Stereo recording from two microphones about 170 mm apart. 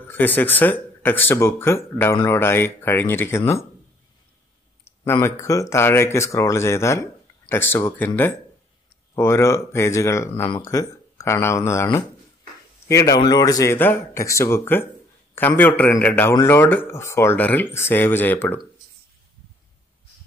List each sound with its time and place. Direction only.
0.0 s speech: 10° left (ahead or behind)
4.8 s speech: 15° left (ahead or behind)
9.1 s speech: 15° left (ahead or behind)